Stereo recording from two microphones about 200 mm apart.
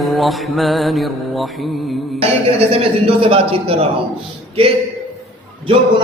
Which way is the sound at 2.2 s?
30° right (ahead or behind).